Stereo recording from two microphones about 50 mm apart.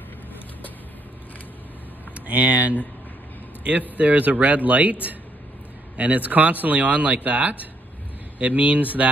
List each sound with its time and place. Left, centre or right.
2.1 s a man's voice: right
5.9 s speech: right